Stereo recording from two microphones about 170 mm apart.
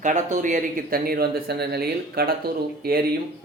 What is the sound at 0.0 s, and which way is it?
A man's voice, 45° right (ahead or behind).